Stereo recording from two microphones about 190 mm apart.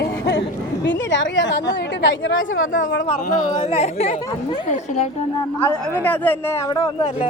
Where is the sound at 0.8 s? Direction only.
75° left (ahead or behind).